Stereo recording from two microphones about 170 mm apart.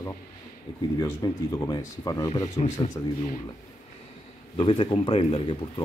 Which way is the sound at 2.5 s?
40° left (ahead or behind).